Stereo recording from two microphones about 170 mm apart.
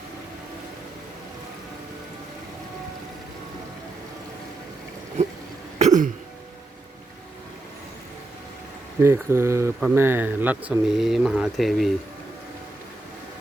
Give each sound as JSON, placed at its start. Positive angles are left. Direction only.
{"t": 5.8, "sound": "cough", "side_deg": -50}
{"t": 9.0, "sound": "speech", "side_deg": -15}